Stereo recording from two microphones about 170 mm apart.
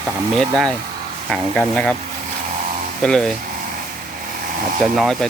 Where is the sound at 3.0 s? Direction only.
5° left (ahead or behind).